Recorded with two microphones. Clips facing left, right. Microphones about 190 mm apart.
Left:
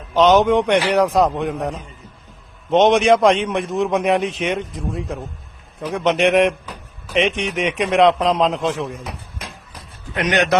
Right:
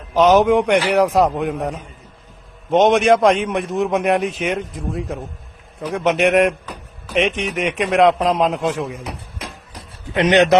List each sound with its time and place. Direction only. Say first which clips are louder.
0.1 s a man's voice: right 1 dB; 5° right (ahead or behind)
10.2 s a man's voice: right 5 dB; 25° right (ahead or behind)